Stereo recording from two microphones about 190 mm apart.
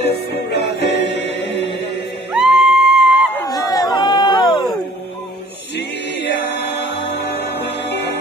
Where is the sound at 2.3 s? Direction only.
5° right (ahead or behind).